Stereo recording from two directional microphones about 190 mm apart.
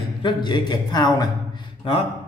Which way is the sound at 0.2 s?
25° left (ahead or behind).